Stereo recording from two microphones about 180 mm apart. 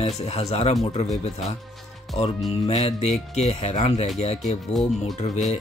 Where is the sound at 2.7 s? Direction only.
35° left (ahead or behind).